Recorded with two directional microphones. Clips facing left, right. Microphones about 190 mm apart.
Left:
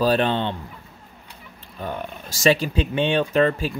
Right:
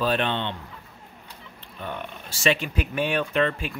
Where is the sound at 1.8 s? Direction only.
40° left (ahead or behind).